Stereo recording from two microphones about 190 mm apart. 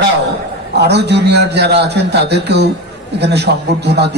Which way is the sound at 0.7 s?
60° right (ahead or behind).